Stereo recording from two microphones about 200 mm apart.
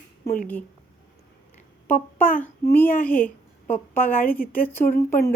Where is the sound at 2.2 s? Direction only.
10° left (ahead or behind).